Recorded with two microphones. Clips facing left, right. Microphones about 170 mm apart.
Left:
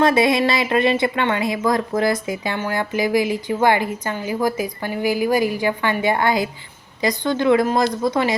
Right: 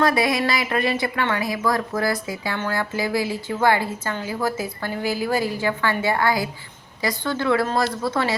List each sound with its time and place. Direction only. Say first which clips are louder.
0.0 s a woman's voice: left 4 dB; 25° left (ahead or behind)